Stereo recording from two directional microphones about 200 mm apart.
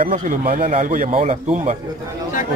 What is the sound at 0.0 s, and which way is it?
A man's voice, 40° right (ahead or behind).